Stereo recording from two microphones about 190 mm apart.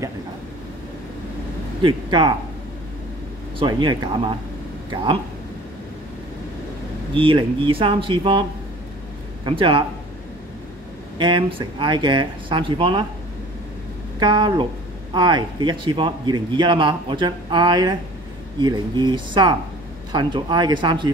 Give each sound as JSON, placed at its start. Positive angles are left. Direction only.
{"t": 1.8, "sound": "a man's voice", "side_deg": -25}
{"t": 3.5, "sound": "a man's voice", "side_deg": -25}
{"t": 7.2, "sound": "a man's voice", "side_deg": -25}
{"t": 11.1, "sound": "a man's voice", "side_deg": -25}
{"t": 14.2, "sound": "a man's voice", "side_deg": -25}